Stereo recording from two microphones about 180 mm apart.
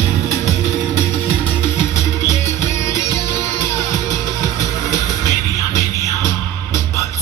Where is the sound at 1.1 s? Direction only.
15° left (ahead or behind).